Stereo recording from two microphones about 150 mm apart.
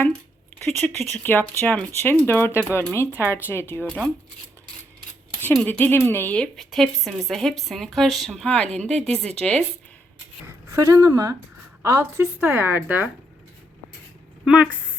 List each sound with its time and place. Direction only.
0.8 s speech: 5° left (ahead or behind)
5.5 s speech: 10° left (ahead or behind)
10.7 s a woman's voice: 20° right (ahead or behind)
14.4 s speech: 10° right (ahead or behind)